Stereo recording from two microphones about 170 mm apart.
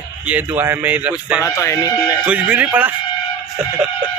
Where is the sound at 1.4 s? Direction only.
20° left (ahead or behind).